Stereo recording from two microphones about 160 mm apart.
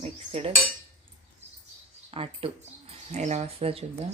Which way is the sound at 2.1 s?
35° right (ahead or behind).